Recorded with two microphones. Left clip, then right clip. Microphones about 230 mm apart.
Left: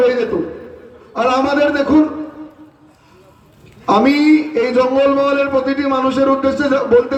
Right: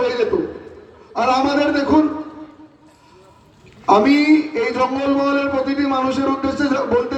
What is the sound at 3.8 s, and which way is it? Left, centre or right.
A man's voice, left.